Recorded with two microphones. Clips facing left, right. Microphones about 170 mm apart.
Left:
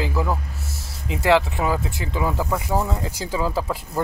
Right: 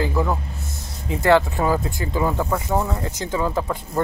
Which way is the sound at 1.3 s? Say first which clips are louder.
Right 2 dB; centre (ahead or behind).